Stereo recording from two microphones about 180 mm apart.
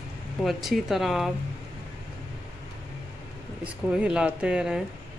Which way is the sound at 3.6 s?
5° right (ahead or behind).